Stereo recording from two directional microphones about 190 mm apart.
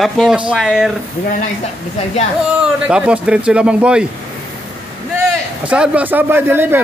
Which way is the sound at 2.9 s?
5° right (ahead or behind).